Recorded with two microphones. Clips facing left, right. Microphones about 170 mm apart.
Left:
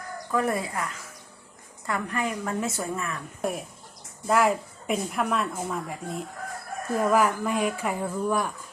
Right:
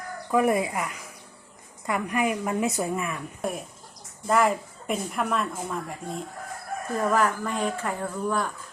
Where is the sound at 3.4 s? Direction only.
Centre (ahead or behind).